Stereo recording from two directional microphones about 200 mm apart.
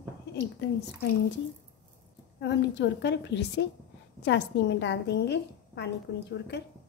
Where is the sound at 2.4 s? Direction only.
60° left (ahead or behind).